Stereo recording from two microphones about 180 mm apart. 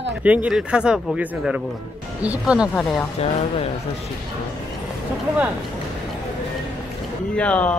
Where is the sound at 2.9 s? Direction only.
35° left (ahead or behind).